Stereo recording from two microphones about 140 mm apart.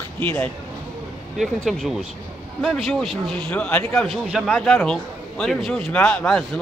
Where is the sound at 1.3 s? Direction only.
5° left (ahead or behind).